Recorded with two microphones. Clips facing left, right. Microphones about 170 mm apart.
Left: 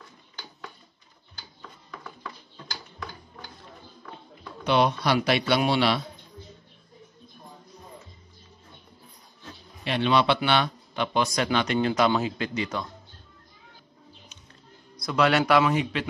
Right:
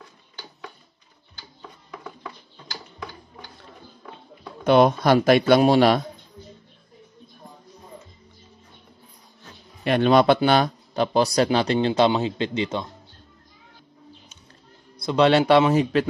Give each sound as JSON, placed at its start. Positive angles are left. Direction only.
{"t": 4.6, "sound": "speech", "side_deg": -50}
{"t": 9.8, "sound": "speech", "side_deg": -45}
{"t": 15.0, "sound": "speech", "side_deg": -25}